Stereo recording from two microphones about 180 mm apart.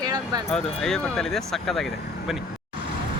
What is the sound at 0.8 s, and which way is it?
Speech, 5° left (ahead or behind).